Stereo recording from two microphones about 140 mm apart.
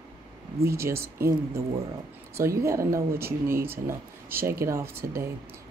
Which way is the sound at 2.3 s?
20° right (ahead or behind).